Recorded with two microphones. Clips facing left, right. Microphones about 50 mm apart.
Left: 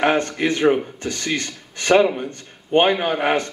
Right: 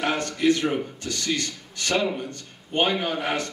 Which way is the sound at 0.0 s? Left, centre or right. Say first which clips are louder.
Left 4 dB; left.